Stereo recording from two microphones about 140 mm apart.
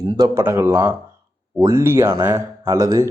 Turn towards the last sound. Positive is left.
turn(degrees=-25)  # may be behind; listen again after turning